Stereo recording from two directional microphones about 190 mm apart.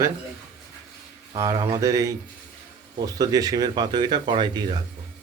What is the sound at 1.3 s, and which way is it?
Speech, 20° right (ahead or behind).